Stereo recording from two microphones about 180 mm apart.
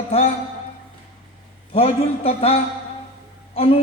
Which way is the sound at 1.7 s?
35° left (ahead or behind).